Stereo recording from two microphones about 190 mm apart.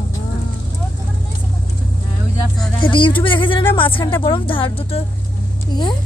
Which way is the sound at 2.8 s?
25° left (ahead or behind).